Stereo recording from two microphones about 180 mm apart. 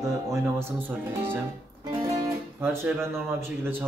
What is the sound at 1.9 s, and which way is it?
Speech, 20° right (ahead or behind).